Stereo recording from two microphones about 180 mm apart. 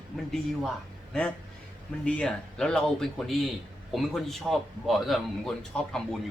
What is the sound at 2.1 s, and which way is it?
A man's voice, 5° left (ahead or behind).